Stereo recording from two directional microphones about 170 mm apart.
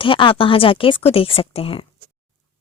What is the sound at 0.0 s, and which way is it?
A woman's voice, 30° left (ahead or behind).